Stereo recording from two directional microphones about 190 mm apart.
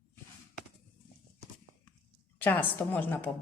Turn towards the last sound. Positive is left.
turn(degrees=10)  # may be behind; listen again after turning